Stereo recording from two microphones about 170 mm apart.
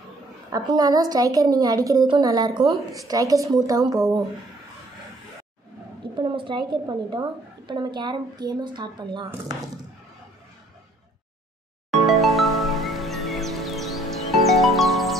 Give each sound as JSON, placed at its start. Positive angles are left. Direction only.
{"t": 0.5, "sound": "a woman's voice", "side_deg": -20}
{"t": 6.1, "sound": "a woman's voice", "side_deg": -30}
{"t": 12.1, "sound": "music", "side_deg": 0}